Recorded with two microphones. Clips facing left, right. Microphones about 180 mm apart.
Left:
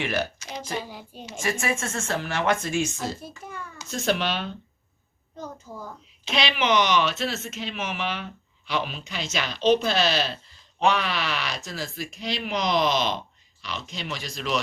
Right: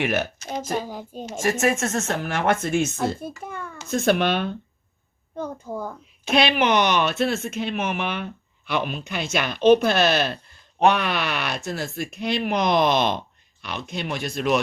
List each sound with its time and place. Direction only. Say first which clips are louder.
0.0 s a woman's voice: right 3 dB; 50° right (ahead or behind)